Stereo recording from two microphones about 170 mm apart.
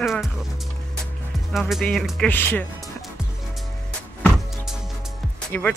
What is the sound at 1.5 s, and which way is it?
Speech, centre (ahead or behind).